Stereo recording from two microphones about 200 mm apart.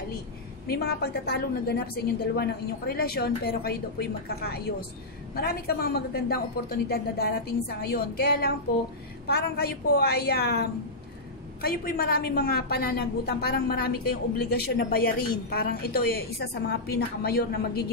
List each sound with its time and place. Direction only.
0.7 s a woman's voice: 50° left (ahead or behind)